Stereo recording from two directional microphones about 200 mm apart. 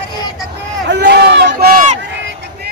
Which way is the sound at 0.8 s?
60° right (ahead or behind).